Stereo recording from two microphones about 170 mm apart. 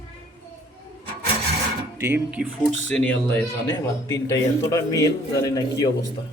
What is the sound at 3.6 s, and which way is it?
A man's voice, 20° left (ahead or behind).